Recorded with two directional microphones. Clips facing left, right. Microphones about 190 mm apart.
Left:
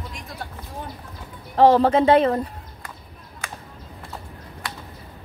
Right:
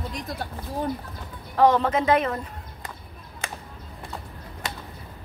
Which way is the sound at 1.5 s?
30° left (ahead or behind).